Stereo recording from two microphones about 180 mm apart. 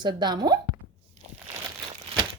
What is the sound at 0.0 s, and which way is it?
Speech, 25° right (ahead or behind).